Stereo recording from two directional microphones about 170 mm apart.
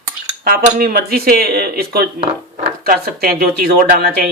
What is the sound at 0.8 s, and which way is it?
Speech, 60° right (ahead or behind).